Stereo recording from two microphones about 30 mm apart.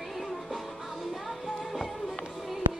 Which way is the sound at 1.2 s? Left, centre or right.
Centre.